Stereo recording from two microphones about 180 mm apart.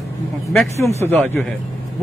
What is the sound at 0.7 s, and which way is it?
Speech, 15° left (ahead or behind).